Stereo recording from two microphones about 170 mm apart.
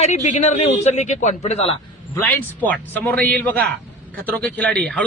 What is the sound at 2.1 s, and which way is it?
A man's voice, 10° left (ahead or behind).